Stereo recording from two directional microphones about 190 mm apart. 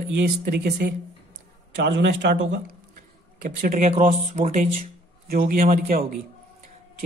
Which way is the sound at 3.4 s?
45° right (ahead or behind).